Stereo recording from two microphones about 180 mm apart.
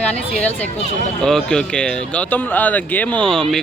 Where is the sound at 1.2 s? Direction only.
5° left (ahead or behind).